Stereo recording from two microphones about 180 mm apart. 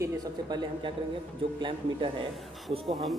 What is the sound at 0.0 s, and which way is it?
Speech, 20° right (ahead or behind).